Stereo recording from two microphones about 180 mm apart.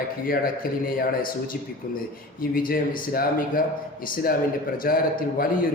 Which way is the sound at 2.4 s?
55° left (ahead or behind).